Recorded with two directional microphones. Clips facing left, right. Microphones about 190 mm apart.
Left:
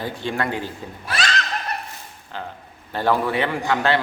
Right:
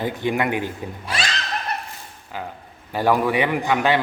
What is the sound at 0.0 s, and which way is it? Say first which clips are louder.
Speech: right 3 dB; 15° right (ahead or behind).